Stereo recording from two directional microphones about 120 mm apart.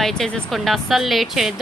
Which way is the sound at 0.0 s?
5° left (ahead or behind).